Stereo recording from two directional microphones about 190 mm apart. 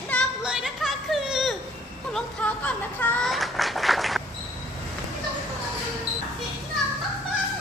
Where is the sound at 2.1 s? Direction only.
5° left (ahead or behind).